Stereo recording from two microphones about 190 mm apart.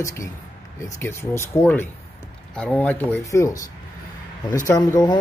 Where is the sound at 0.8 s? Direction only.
15° left (ahead or behind).